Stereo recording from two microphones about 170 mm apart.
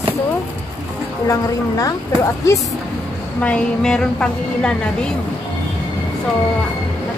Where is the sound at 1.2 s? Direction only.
20° left (ahead or behind).